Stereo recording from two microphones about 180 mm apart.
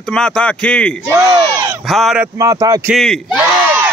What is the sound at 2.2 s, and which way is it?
Speech, 15° right (ahead or behind).